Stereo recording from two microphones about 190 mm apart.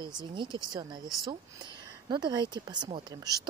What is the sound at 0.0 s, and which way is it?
A woman's voice, 25° right (ahead or behind).